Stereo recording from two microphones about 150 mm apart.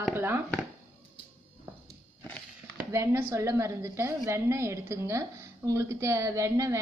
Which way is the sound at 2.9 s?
20° right (ahead or behind).